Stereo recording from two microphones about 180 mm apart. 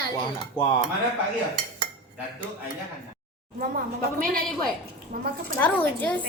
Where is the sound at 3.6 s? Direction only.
55° right (ahead or behind).